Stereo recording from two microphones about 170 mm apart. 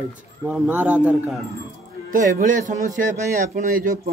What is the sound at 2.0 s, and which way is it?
A man's voice, 50° right (ahead or behind).